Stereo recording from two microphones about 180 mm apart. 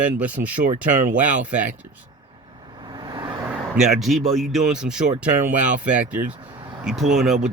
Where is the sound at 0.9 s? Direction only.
45° right (ahead or behind).